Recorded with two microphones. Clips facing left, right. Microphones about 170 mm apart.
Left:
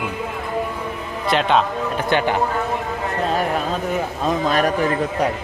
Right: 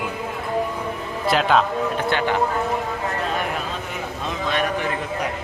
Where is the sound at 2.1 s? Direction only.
20° left (ahead or behind).